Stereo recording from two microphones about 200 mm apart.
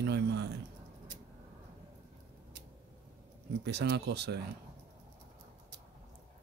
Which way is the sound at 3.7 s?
55° right (ahead or behind).